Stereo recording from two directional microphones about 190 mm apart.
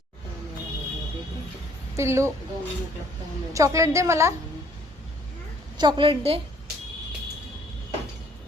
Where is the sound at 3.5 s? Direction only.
15° right (ahead or behind).